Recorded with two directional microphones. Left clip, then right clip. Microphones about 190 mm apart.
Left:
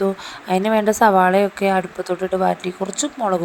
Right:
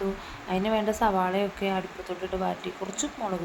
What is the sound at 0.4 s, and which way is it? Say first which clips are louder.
Speech: left 9 dB; 40° left (ahead or behind).